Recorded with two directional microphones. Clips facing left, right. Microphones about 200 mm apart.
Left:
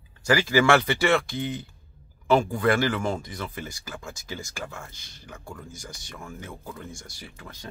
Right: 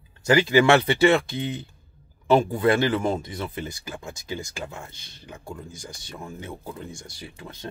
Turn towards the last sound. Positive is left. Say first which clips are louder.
# right 4 dB
turn(degrees=-25)  # may be behind; listen again after turning